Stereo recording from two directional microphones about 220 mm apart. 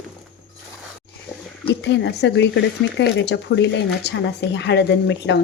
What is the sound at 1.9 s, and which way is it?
Speech, 50° left (ahead or behind).